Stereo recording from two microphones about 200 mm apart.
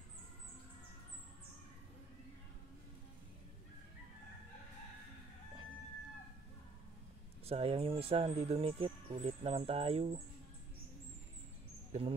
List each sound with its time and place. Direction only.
7.4 s speech: 30° right (ahead or behind)
11.9 s speech: 35° right (ahead or behind)